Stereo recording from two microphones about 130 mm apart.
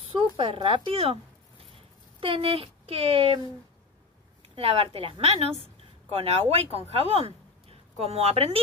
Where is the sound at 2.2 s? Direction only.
45° right (ahead or behind).